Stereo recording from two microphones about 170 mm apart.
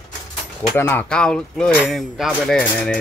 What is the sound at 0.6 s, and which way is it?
Speech, 10° left (ahead or behind).